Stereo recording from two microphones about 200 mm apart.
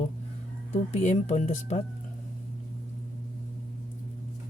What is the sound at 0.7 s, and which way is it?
Speech, 35° left (ahead or behind).